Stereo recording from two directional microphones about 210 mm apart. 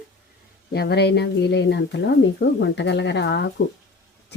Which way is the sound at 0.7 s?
50° left (ahead or behind).